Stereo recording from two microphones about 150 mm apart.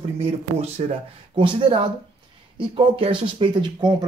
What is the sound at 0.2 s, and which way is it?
A man's voice, 45° right (ahead or behind).